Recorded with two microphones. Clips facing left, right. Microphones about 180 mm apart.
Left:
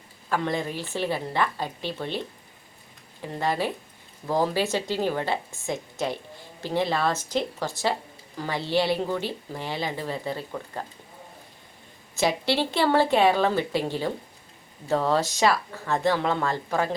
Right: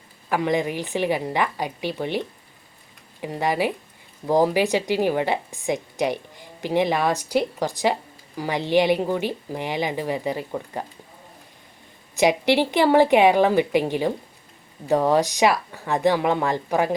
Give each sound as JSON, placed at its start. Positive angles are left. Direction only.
{"t": 0.3, "sound": "a woman's voice", "side_deg": -15}
{"t": 12.1, "sound": "a woman's voice", "side_deg": -15}